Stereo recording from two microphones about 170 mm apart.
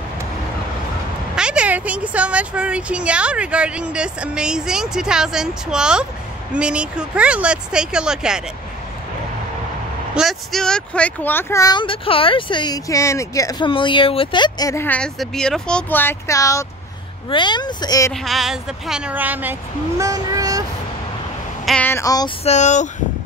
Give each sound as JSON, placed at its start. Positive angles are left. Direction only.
{"t": 1.3, "sound": "a woman's voice", "side_deg": -5}
{"t": 10.1, "sound": "speech", "side_deg": 0}
{"t": 18.1, "sound": "a woman's voice", "side_deg": 0}
{"t": 20.0, "sound": "child singing", "side_deg": -20}
{"t": 21.6, "sound": "speech", "side_deg": 10}
{"t": 22.4, "sound": "speech", "side_deg": 40}